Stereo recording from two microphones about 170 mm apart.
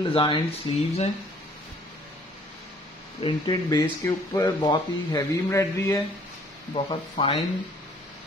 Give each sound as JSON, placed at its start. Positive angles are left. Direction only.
{"t": 0.1, "sound": "speech", "side_deg": 30}
{"t": 3.2, "sound": "speech", "side_deg": 25}
{"t": 6.7, "sound": "speech", "side_deg": 35}